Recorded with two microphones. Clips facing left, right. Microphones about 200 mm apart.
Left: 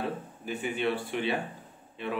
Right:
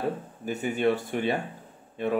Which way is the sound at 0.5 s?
45° right (ahead or behind).